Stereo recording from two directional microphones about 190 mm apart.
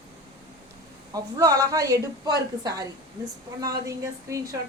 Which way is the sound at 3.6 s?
20° right (ahead or behind).